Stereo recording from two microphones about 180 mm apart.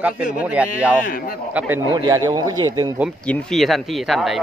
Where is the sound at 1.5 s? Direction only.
10° right (ahead or behind).